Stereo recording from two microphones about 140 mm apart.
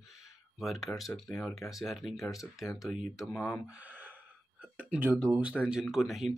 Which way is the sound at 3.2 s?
15° left (ahead or behind).